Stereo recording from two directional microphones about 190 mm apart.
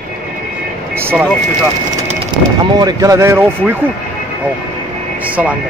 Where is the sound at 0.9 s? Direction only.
10° right (ahead or behind).